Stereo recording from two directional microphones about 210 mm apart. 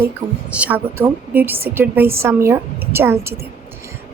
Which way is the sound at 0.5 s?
5° right (ahead or behind).